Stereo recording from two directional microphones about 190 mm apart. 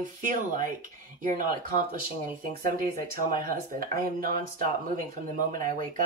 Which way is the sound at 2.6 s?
50° right (ahead or behind).